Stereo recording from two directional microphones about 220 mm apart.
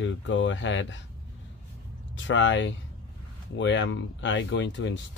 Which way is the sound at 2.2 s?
55° left (ahead or behind).